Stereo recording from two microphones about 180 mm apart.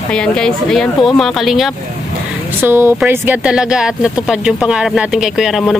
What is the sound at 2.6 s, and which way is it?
Speech, 15° right (ahead or behind).